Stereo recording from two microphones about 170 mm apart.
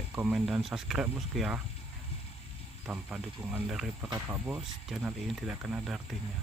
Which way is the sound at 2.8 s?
10° right (ahead or behind).